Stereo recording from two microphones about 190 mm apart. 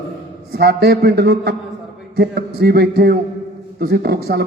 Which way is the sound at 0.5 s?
55° right (ahead or behind).